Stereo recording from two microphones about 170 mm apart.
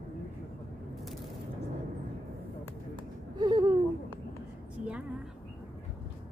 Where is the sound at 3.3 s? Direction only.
25° right (ahead or behind).